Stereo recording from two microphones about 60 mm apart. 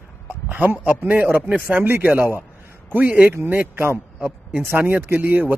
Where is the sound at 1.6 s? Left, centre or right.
Right.